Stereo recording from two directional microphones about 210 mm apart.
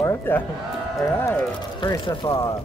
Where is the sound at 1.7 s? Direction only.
20° left (ahead or behind).